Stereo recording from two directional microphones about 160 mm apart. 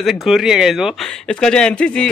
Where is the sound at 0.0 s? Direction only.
Centre (ahead or behind).